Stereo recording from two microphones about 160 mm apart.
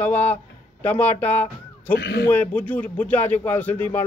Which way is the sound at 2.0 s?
90° left.